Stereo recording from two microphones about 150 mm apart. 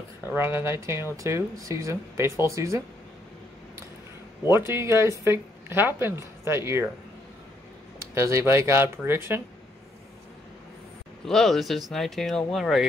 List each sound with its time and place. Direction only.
0.2 s speech: 15° right (ahead or behind)
4.5 s speech: 15° right (ahead or behind)
8.1 s speech: 20° right (ahead or behind)
11.2 s speech: centre (ahead or behind)